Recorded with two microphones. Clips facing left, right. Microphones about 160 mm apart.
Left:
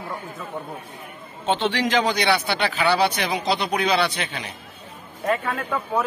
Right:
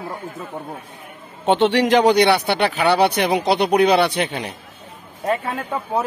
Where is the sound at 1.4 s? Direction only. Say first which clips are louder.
Right 6 dB; 70° right (ahead or behind).